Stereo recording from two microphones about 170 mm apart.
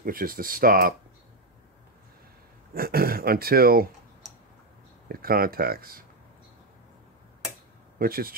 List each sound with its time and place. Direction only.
0.0 s speech: 55° right (ahead or behind)
2.7 s speech: 60° right (ahead or behind)
5.0 s speech: 60° right (ahead or behind)
8.0 s speech: 60° right (ahead or behind)